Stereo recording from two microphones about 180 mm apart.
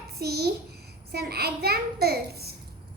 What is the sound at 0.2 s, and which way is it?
A child's voice, 60° right (ahead or behind).